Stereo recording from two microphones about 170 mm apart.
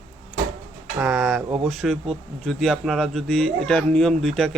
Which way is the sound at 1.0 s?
5° right (ahead or behind).